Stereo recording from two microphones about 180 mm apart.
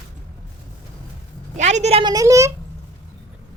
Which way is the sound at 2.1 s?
15° right (ahead or behind).